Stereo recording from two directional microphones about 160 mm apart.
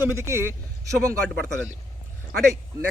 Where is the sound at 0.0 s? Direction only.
15° right (ahead or behind).